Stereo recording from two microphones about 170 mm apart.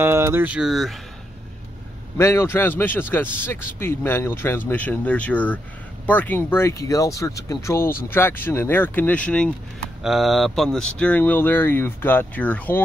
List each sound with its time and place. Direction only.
0.0 s speech: 15° right (ahead or behind)
2.1 s speech: 15° left (ahead or behind)